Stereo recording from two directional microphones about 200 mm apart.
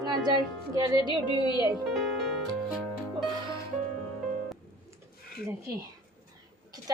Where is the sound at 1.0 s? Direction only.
20° left (ahead or behind).